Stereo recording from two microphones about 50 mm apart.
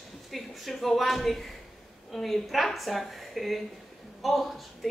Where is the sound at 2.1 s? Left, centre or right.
Centre.